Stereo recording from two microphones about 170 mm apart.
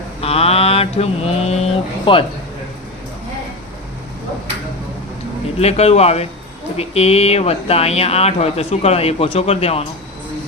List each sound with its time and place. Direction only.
0.2 s mantra: 35° left (ahead or behind)
2.1 s speech: 30° left (ahead or behind)
5.5 s speech: 35° left (ahead or behind)